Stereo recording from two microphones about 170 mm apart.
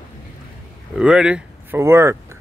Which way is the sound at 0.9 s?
5° right (ahead or behind).